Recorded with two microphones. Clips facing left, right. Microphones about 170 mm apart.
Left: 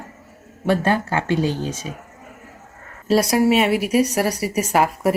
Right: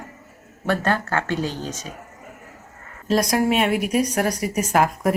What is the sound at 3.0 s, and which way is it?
Speech, 5° left (ahead or behind).